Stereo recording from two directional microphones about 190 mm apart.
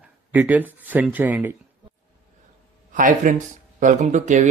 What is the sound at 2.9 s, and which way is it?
Speech, 45° right (ahead or behind).